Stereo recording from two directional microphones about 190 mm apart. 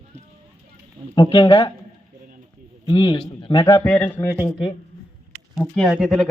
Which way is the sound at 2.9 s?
25° left (ahead or behind).